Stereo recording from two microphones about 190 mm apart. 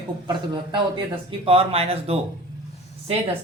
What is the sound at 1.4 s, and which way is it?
Speech, 30° right (ahead or behind).